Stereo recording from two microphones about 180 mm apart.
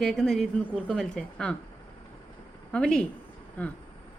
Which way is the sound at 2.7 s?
5° left (ahead or behind).